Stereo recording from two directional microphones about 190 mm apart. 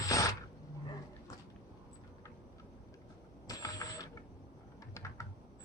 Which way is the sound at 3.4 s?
20° left (ahead or behind).